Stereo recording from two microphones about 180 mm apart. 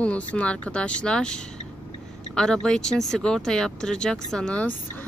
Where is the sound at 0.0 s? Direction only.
5° left (ahead or behind).